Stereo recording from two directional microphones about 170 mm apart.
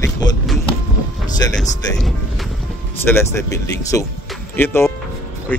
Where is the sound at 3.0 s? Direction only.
15° left (ahead or behind).